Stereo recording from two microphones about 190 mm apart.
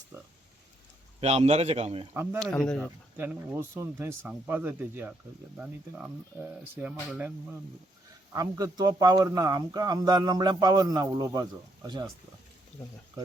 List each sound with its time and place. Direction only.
1.2 s a man's voice: 35° right (ahead or behind)
2.4 s speech: 5° left (ahead or behind)
3.2 s speech: 10° right (ahead or behind)
8.3 s speech: 20° right (ahead or behind)